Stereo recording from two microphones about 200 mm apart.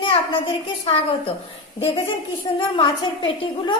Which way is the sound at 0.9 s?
25° left (ahead or behind).